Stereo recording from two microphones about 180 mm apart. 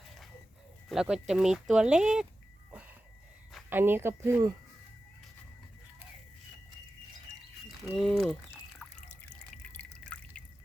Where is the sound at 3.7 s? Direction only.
10° right (ahead or behind).